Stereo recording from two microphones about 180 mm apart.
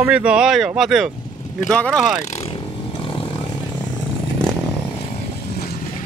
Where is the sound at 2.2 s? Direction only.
40° left (ahead or behind).